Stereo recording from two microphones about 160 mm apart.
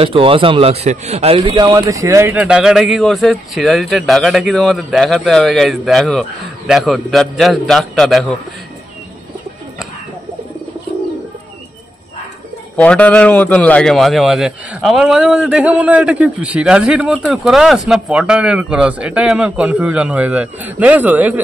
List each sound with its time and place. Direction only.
0.0 s a man's voice: 35° right (ahead or behind)
1.4 s speech: 25° right (ahead or behind); by 8.4 s centre (ahead or behind)
12.7 s speech: 10° left (ahead or behind); by 21.4 s 10° right (ahead or behind)